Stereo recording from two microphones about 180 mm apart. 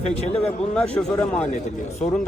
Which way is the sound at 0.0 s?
35° left (ahead or behind).